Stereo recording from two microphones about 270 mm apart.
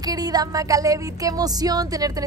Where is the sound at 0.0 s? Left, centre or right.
Centre.